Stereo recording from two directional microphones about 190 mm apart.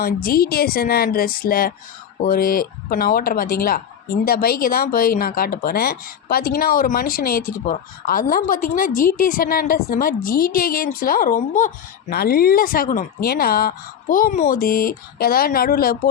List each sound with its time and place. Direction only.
0.0 s speech: 50° left (ahead or behind)